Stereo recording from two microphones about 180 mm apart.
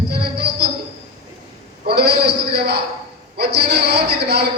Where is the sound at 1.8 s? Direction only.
65° right (ahead or behind).